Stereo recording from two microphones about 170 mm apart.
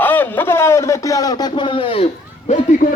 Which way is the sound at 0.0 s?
10° left (ahead or behind).